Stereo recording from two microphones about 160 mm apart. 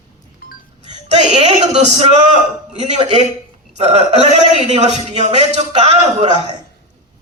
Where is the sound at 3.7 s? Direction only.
40° right (ahead or behind).